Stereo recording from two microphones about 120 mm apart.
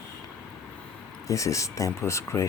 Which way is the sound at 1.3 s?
25° left (ahead or behind).